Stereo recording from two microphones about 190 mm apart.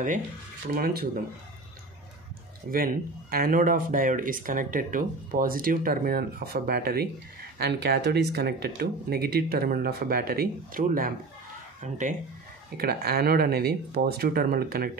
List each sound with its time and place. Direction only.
0.7 s speech: 50° right (ahead or behind)
2.7 s speech: 50° right (ahead or behind)
12.7 s speech: 55° right (ahead or behind)